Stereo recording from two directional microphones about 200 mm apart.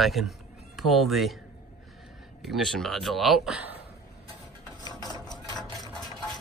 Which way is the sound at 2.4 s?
Centre (ahead or behind).